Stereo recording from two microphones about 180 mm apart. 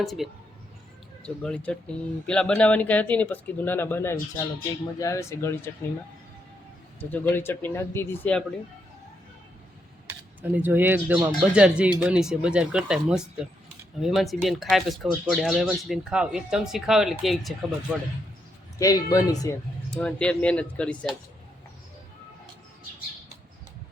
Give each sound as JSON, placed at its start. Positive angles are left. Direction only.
{"t": 0.0, "sound": "speech", "side_deg": 0}
{"t": 7.0, "sound": "speech", "side_deg": 10}
{"t": 10.1, "sound": "speech", "side_deg": -10}
{"t": 18.8, "sound": "speech", "side_deg": 20}
{"t": 19.9, "sound": "speech", "side_deg": 5}